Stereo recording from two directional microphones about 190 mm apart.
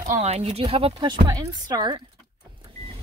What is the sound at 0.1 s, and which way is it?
Speech, 35° right (ahead or behind).